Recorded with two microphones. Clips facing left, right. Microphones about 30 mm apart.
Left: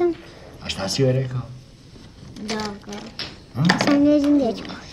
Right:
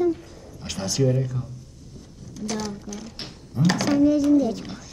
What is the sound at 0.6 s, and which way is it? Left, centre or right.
Speech, left.